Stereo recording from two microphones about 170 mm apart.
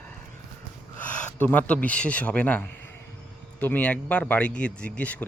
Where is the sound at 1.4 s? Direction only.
10° left (ahead or behind).